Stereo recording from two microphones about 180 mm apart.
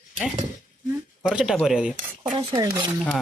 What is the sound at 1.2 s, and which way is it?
Cutlery, 5° right (ahead or behind).